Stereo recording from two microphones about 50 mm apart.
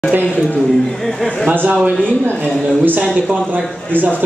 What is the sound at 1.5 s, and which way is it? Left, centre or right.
Speech, right.